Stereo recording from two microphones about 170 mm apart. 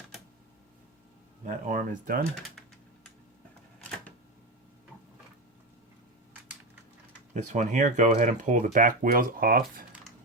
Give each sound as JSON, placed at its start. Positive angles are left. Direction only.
{"t": 1.5, "sound": "speech", "side_deg": -50}
{"t": 7.3, "sound": "speech", "side_deg": -45}